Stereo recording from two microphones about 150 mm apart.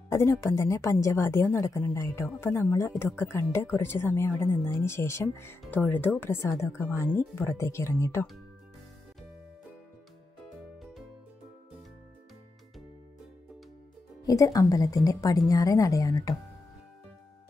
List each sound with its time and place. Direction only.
0.1 s a woman's voice: 20° left (ahead or behind)
10.8 s music: centre (ahead or behind)
14.2 s a woman's voice: 20° left (ahead or behind)